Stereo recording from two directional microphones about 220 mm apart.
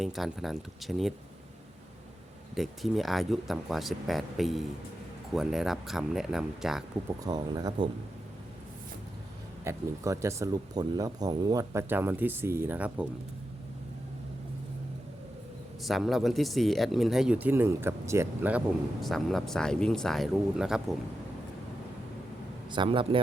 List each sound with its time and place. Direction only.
0.0 s speech: centre (ahead or behind)
2.6 s speech: centre (ahead or behind)
7.3 s speech: 20° right (ahead or behind)
9.6 s speech: 15° right (ahead or behind)
15.8 s speech: centre (ahead or behind)
19.0 s speech: centre (ahead or behind)
22.7 s speech: 20° right (ahead or behind)